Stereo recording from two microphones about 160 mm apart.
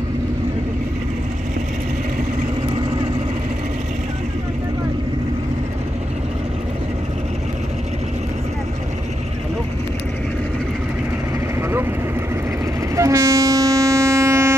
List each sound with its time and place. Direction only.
12.9 s train: 20° right (ahead or behind)